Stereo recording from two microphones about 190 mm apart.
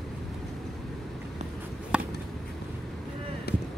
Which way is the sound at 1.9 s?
5° right (ahead or behind).